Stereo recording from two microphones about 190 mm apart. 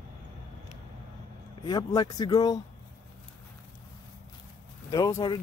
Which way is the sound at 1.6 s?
20° left (ahead or behind).